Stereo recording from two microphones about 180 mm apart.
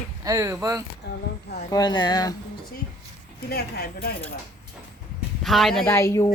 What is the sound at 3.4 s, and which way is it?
Speech, 60° left (ahead or behind).